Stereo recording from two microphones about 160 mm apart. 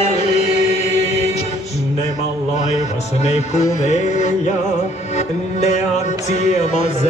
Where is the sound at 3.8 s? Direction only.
45° left (ahead or behind).